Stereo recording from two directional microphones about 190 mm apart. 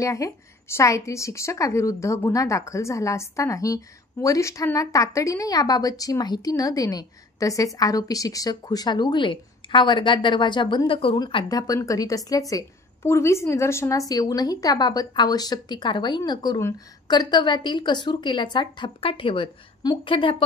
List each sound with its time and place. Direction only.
0.0 s a woman's voice: 15° left (ahead or behind)